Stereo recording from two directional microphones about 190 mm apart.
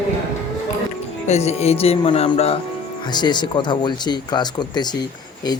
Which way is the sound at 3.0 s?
25° left (ahead or behind).